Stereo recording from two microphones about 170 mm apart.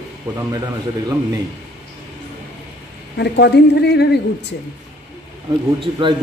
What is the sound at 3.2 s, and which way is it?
A woman's voice, 85° left.